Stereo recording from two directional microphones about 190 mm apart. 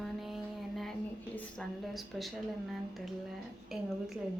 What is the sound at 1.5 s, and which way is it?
Speech, centre (ahead or behind).